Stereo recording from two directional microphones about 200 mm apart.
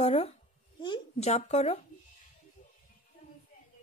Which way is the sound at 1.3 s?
35° left (ahead or behind).